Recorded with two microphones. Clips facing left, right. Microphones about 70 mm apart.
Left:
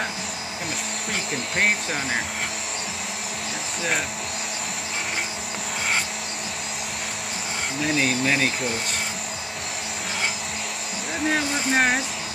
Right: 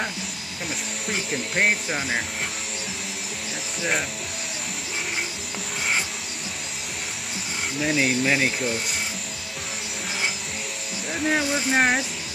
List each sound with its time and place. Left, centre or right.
1.1 s hair dryer: centre
7.8 s speech: centre
11.2 s hair dryer: centre